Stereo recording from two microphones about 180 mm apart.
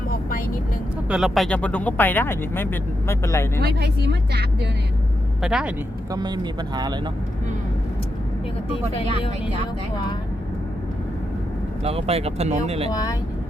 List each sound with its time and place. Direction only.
0.1 s vehicle: 50° left (ahead or behind)
1.1 s speech: centre (ahead or behind); by 3.6 s 15° left (ahead or behind)
3.6 s speech: 65° right (ahead or behind)
5.4 s speech: 5° right (ahead or behind)
6.1 s speech: 25° right (ahead or behind)
11.8 s speech: 35° right (ahead or behind)
12.9 s speech: 20° left (ahead or behind)